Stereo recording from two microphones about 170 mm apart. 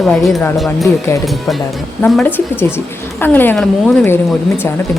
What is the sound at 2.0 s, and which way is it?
Speech, 10° left (ahead or behind).